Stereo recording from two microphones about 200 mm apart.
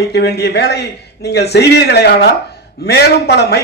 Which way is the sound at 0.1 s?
55° left (ahead or behind).